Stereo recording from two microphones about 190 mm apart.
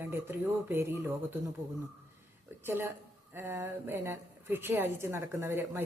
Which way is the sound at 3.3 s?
10° right (ahead or behind).